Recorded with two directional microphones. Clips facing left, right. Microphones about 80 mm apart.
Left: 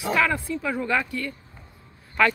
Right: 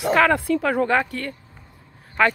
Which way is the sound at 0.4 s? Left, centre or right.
Right.